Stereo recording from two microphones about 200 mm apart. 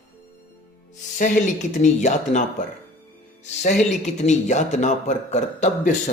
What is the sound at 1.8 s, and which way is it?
Speech, 35° left (ahead or behind).